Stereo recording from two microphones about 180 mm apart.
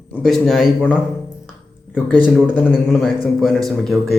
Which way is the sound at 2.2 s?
5° right (ahead or behind).